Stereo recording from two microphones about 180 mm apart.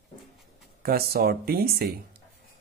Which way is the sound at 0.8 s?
60° right (ahead or behind).